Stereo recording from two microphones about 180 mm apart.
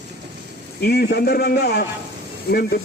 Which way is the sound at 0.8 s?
60° left (ahead or behind).